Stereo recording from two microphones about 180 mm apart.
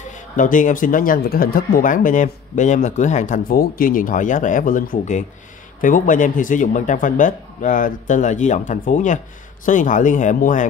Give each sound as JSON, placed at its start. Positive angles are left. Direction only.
{"t": 0.1, "sound": "speech", "side_deg": 45}